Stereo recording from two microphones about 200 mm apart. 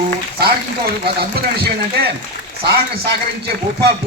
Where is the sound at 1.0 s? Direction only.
55° right (ahead or behind).